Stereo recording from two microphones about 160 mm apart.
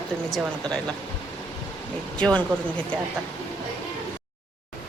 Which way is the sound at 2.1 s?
5° left (ahead or behind).